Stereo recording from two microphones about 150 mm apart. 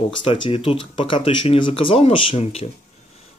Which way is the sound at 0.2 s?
35° left (ahead or behind).